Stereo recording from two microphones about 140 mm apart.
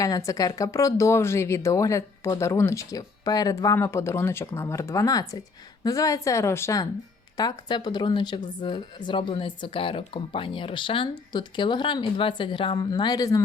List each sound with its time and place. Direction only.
0.0 s speech: 25° left (ahead or behind)